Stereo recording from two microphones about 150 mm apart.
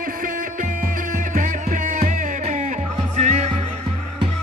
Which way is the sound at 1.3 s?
60° right (ahead or behind).